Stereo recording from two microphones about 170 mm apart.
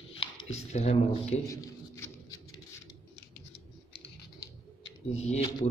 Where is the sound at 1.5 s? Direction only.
20° left (ahead or behind).